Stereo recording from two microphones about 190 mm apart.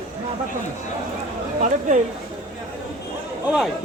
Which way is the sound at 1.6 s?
40° right (ahead or behind).